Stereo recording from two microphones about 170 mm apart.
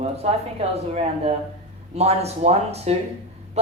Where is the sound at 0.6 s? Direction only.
35° right (ahead or behind).